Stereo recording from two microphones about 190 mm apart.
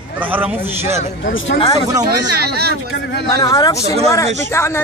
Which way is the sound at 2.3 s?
55° right (ahead or behind).